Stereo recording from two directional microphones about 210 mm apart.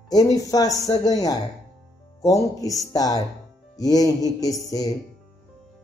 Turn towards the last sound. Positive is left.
turn(degrees=15)  # may be behind; listen again after turning